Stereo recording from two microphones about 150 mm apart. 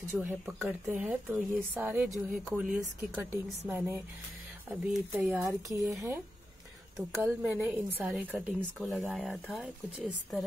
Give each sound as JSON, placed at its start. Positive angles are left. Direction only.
{"t": 0.1, "sound": "a woman's voice", "side_deg": -10}
{"t": 2.6, "sound": "a woman's voice", "side_deg": -5}
{"t": 5.7, "sound": "speech", "side_deg": -20}
{"t": 7.0, "sound": "a woman's voice", "side_deg": -5}